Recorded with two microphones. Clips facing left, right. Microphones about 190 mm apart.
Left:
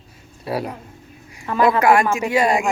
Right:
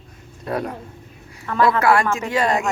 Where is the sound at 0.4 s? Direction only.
10° left (ahead or behind).